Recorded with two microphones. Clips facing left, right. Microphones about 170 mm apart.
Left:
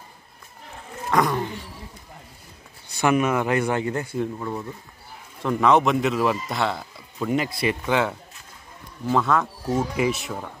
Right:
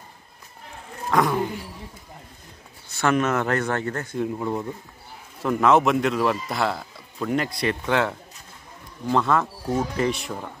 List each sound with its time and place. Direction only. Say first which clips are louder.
1.1 s a man's voice: right 1 dB; centre (ahead or behind)
2.9 s speech: left 1 dB; 10° left (ahead or behind)
4.4 s speech: right 3 dB; 15° right (ahead or behind)
5.4 s a man's voice: even; centre (ahead or behind)